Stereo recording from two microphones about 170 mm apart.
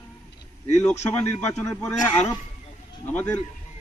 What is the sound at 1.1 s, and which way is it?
Speech, 10° left (ahead or behind).